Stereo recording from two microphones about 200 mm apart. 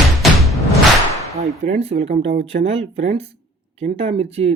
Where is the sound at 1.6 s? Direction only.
30° right (ahead or behind).